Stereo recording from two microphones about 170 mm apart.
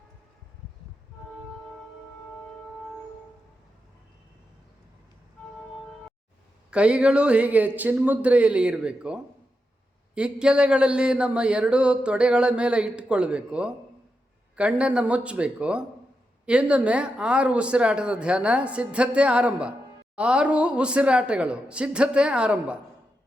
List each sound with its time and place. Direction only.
6.7 s speech: 5° right (ahead or behind)